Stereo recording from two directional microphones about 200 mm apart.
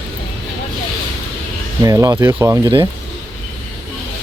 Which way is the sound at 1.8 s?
15° right (ahead or behind).